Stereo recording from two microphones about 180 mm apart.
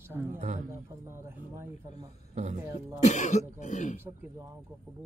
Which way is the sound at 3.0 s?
40° left (ahead or behind).